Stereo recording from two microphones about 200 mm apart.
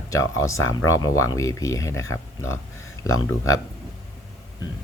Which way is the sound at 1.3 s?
15° left (ahead or behind).